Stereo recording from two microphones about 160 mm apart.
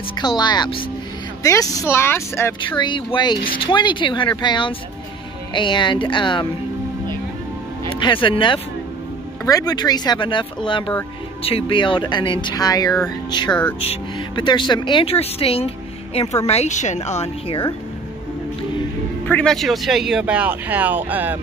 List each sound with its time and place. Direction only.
0.4 s speech: 25° left (ahead or behind)
2.7 s speech: 30° left (ahead or behind)
7.9 s speech: 30° left (ahead or behind)
13.5 s speech: 10° left (ahead or behind)
13.7 s a woman's voice: 35° left (ahead or behind)
19.2 s speech: 5° left (ahead or behind); by 21.4 s 10° right (ahead or behind)